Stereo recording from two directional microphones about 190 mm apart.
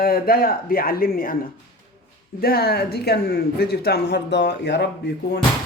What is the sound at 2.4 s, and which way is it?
Speech, 55° left (ahead or behind).